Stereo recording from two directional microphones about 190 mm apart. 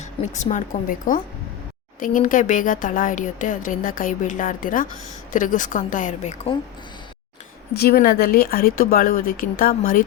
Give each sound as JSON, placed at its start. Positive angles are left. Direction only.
{"t": 0.0, "sound": "speech", "side_deg": 40}
{"t": 7.8, "sound": "speech", "side_deg": 55}